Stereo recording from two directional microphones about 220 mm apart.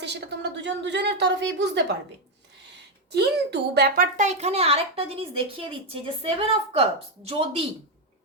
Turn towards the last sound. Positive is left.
turn(degrees=-25)  # may be behind; listen again after turning